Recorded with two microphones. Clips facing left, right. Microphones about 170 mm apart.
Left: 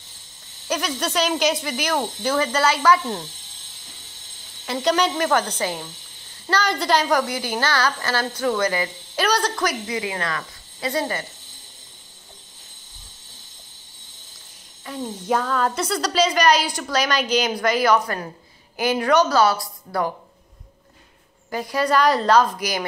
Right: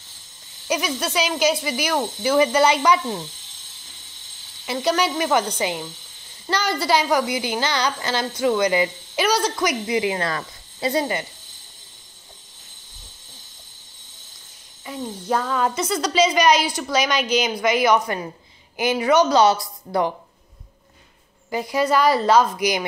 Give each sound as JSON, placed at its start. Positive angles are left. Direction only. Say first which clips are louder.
{"t": 0.7, "sound": "speech", "louder": "right 1 dB", "side_deg": -10}
{"t": 4.7, "sound": "speech", "louder": "left 1 dB", "side_deg": -5}
{"t": 9.8, "sound": "speech", "louder": "right 4 dB", "side_deg": -25}
{"t": 10.9, "sound": "speech", "louder": "right 2 dB", "side_deg": -20}
{"t": 15.0, "sound": "speech", "louder": "left 1 dB", "side_deg": 0}
{"t": 21.5, "sound": "speech", "louder": "right 1 dB", "side_deg": -10}